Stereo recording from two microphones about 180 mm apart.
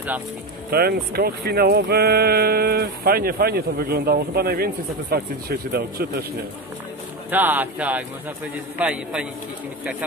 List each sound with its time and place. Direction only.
0.7 s speech: 60° right (ahead or behind)
7.2 s speech: 10° right (ahead or behind)